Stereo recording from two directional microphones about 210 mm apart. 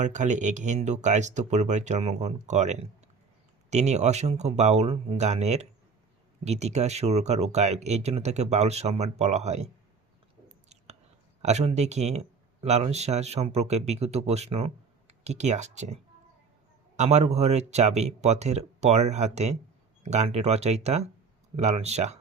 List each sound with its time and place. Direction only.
0.0 s speech: 35° right (ahead or behind)
11.4 s speech: 30° right (ahead or behind)
17.0 s speech: 30° right (ahead or behind)